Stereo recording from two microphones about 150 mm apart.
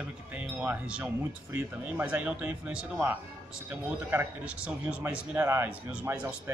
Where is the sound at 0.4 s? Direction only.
10° right (ahead or behind).